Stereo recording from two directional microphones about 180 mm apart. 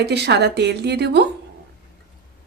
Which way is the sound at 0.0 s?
70° right (ahead or behind).